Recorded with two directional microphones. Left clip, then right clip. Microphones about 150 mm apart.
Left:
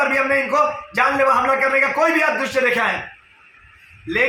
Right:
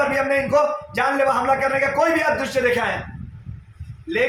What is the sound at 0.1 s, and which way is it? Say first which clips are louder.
A man's voice: left 1 dB; 15° right (ahead or behind).